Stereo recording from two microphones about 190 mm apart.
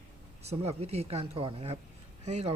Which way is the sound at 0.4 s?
35° right (ahead or behind).